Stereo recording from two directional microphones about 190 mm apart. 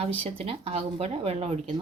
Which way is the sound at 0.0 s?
30° right (ahead or behind).